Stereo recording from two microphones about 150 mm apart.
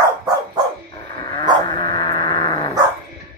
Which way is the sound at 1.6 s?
25° left (ahead or behind).